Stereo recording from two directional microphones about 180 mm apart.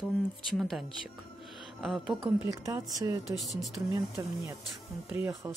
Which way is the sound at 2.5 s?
20° right (ahead or behind).